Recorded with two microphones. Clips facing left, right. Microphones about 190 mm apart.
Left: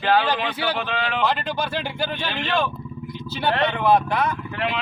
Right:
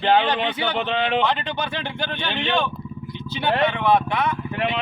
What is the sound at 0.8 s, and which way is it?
Speech, 20° right (ahead or behind).